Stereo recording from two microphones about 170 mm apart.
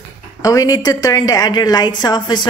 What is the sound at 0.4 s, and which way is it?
A woman's voice, 20° left (ahead or behind).